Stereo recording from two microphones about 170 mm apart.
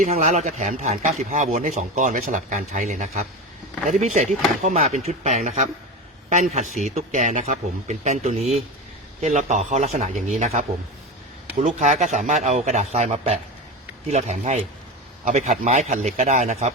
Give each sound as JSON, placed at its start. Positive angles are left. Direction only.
{"t": 0.0, "sound": "a man's voice", "side_deg": -45}